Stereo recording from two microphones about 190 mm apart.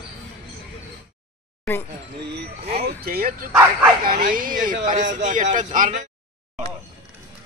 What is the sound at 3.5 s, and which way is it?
Bow-wow, 5° right (ahead or behind).